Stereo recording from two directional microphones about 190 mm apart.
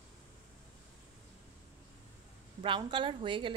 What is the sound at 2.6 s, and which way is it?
Speech, 25° right (ahead or behind).